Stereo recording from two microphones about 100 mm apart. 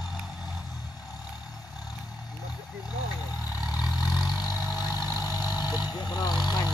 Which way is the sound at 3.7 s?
40° left (ahead or behind).